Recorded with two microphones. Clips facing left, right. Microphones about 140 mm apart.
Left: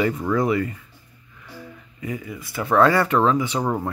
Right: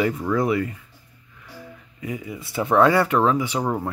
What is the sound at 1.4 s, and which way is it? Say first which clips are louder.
Music: left 1 dB; 5° right (ahead or behind).